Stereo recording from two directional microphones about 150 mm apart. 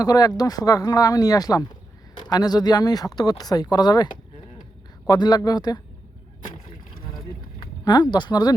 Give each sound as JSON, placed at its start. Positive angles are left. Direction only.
{"t": 0.0, "sound": "speech", "side_deg": 25}
{"t": 8.1, "sound": "speech", "side_deg": 30}